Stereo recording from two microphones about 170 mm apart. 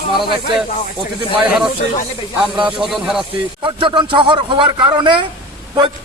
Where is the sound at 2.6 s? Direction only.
5° right (ahead or behind).